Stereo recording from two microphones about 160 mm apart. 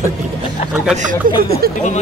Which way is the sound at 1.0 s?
55° right (ahead or behind).